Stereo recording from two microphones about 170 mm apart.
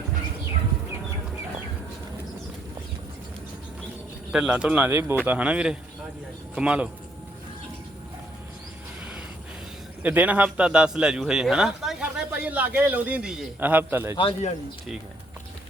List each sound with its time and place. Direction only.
4.3 s a man's voice: 5° right (ahead or behind)
10.0 s a man's voice: 10° right (ahead or behind)
14.2 s speech: 35° left (ahead or behind)